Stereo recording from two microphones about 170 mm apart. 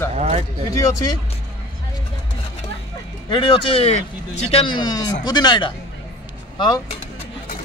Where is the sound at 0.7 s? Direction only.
20° left (ahead or behind).